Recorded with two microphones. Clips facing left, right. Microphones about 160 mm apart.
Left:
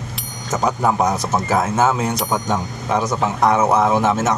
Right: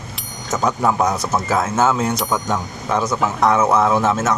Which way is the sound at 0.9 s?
20° left (ahead or behind).